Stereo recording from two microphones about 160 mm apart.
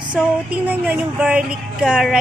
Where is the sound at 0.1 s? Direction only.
10° right (ahead or behind).